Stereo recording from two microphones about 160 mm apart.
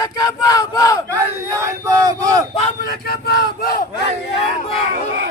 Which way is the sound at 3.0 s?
70° left (ahead or behind).